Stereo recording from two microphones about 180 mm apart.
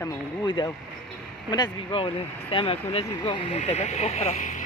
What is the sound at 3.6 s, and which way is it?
Speech, 40° left (ahead or behind).